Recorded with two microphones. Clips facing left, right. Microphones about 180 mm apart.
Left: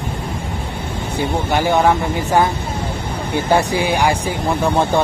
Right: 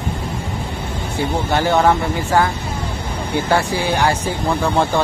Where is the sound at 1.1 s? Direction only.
15° left (ahead or behind).